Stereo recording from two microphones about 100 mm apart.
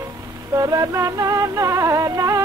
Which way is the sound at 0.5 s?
35° right (ahead or behind).